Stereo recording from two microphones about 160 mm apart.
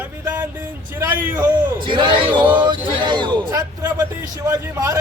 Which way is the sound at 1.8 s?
30° right (ahead or behind).